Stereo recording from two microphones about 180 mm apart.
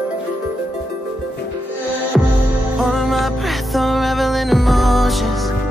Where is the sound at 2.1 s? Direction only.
Centre (ahead or behind).